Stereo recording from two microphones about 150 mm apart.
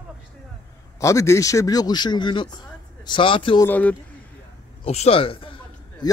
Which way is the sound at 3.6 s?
10° left (ahead or behind).